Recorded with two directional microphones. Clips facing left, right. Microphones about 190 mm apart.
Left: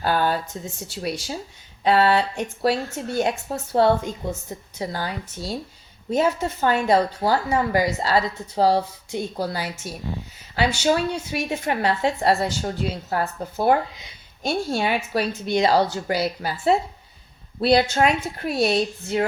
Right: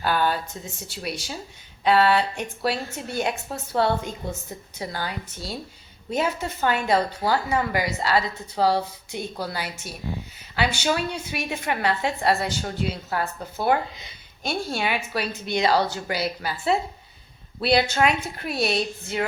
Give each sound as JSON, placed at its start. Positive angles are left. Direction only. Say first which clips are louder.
{"t": 0.0, "sound": "a sound", "louder": "left 2 dB", "side_deg": 40}
{"t": 0.5, "sound": "speech", "louder": "left 4 dB", "side_deg": 35}
{"t": 1.8, "sound": "a woman's voice", "louder": "left 1 dB", "side_deg": 40}